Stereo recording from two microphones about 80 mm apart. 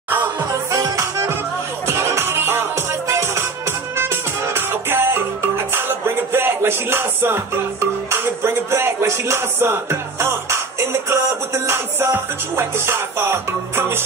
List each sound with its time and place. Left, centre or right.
0.5 s music: right
1.9 s music: right